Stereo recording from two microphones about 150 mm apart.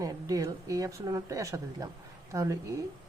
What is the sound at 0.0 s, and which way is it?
Speech, 25° right (ahead or behind).